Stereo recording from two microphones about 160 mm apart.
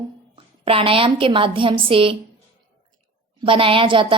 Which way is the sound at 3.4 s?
35° right (ahead or behind).